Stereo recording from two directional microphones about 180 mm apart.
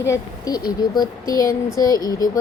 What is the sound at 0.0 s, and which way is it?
Speech, 20° left (ahead or behind).